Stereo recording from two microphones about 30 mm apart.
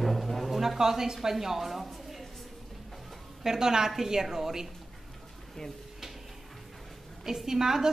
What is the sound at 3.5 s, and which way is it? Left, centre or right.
A woman's voice, centre.